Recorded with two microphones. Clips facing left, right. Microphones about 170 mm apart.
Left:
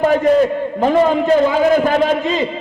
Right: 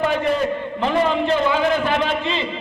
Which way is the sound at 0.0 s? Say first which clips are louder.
Left 6 dB; 40° left (ahead or behind).